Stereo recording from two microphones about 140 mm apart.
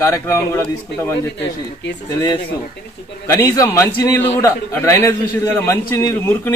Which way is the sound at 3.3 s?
20° left (ahead or behind).